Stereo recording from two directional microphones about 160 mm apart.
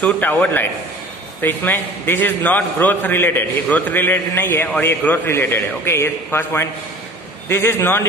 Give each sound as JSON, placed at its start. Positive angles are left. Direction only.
{"t": 0.0, "sound": "a man's voice", "side_deg": 10}